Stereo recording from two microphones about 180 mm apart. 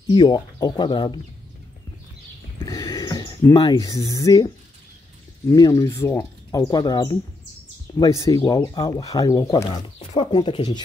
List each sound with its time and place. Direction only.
0.1 s speech: 25° left (ahead or behind)
2.6 s a sound: 20° left (ahead or behind)
5.5 s speech: 20° left (ahead or behind)